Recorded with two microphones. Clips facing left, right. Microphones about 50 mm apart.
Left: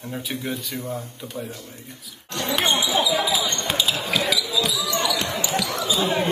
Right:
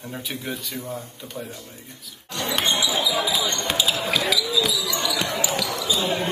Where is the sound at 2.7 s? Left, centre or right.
Left.